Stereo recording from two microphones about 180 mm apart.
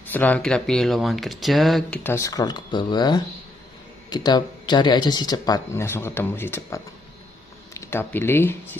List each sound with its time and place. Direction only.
0.0 s speech: 10° left (ahead or behind)
2.0 s speech: 15° left (ahead or behind)